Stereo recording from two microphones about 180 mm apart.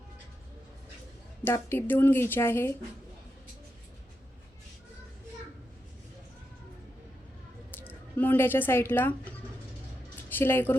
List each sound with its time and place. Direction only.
1.5 s a woman's voice: 10° left (ahead or behind)
7.8 s a woman's voice: 10° left (ahead or behind)